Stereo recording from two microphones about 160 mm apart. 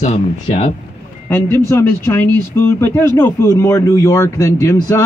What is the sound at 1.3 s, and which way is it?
A man's voice, 15° left (ahead or behind).